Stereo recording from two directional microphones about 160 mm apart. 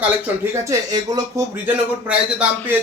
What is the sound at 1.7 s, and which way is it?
A man's voice, 10° right (ahead or behind).